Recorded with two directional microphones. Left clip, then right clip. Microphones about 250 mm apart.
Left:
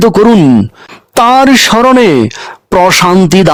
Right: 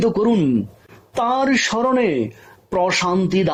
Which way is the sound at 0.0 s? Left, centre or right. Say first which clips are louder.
Left 12 dB; left.